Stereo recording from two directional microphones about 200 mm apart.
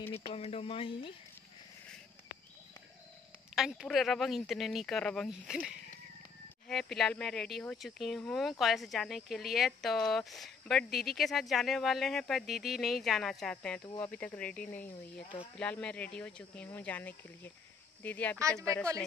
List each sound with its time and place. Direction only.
0.1 s speech: 30° left (ahead or behind)
3.5 s speech: centre (ahead or behind)
13.8 s speech: 15° left (ahead or behind)
14.1 s speech: 5° left (ahead or behind)